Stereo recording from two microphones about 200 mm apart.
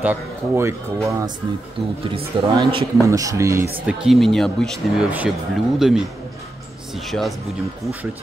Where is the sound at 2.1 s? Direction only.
25° right (ahead or behind).